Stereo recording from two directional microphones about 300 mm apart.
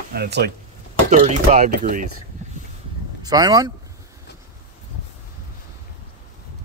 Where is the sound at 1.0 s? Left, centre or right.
Right.